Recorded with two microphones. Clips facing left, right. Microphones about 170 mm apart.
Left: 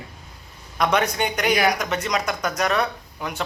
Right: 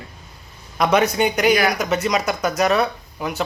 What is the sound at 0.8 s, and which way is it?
Speech, 5° right (ahead or behind).